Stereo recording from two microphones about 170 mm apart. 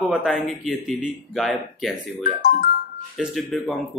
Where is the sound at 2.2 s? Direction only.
50° left (ahead or behind).